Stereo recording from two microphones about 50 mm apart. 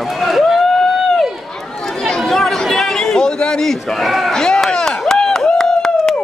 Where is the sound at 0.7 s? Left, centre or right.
Centre.